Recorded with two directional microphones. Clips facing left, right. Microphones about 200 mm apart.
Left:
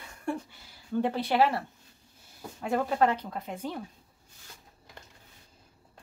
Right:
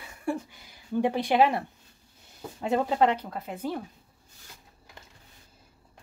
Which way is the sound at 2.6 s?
20° right (ahead or behind).